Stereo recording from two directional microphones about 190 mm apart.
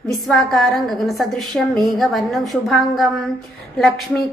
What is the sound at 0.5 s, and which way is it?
A woman's voice, centre (ahead or behind).